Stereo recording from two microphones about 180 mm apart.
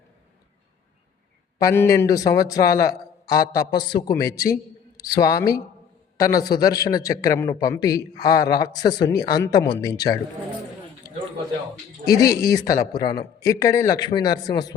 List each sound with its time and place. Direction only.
1.5 s a man's voice: 15° left (ahead or behind)
12.0 s a man's voice: 20° left (ahead or behind)